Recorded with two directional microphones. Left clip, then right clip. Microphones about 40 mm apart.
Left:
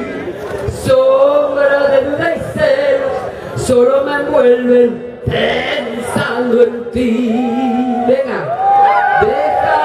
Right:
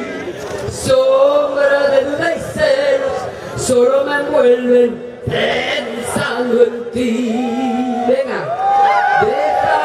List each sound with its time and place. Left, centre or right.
0.8 s male singing: right
2.1 s music: centre
3.8 s a sound: right